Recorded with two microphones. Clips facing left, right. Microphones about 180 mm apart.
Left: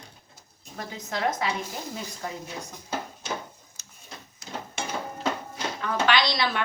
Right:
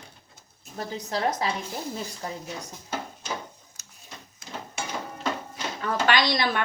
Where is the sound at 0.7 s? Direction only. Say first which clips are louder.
Right 3 dB; 35° right (ahead or behind).